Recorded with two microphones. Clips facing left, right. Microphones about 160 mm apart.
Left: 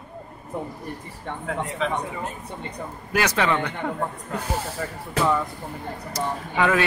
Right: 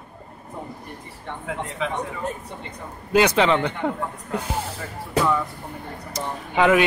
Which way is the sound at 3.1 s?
20° right (ahead or behind).